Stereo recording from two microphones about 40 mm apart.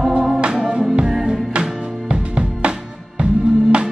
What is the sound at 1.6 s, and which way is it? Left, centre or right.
Music, right.